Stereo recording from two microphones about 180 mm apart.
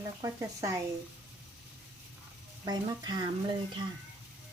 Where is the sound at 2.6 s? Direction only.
20° right (ahead or behind).